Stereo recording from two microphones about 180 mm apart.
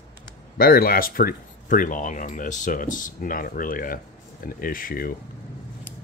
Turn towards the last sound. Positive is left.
turn(degrees=50)  # may be behind; listen again after turning